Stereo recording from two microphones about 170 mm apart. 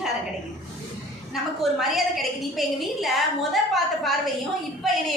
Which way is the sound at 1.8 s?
Centre (ahead or behind).